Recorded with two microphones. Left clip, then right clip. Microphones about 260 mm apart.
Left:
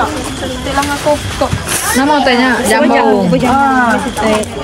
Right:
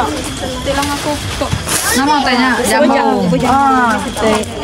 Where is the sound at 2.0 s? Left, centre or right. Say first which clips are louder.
Left 3 dB; centre.